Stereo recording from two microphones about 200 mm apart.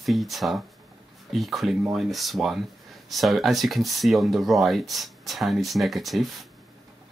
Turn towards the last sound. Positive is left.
turn(degrees=0)  # may be behind; listen again after turning